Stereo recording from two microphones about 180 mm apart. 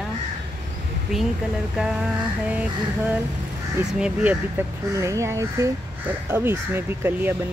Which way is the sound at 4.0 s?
10° right (ahead or behind).